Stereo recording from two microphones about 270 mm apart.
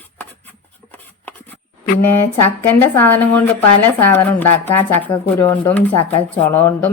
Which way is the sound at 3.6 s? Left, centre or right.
Left.